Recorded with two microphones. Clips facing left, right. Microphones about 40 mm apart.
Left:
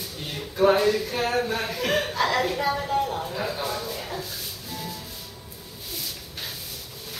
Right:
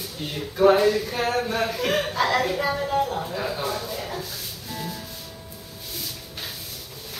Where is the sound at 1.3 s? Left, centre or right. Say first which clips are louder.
Right 1 dB; centre.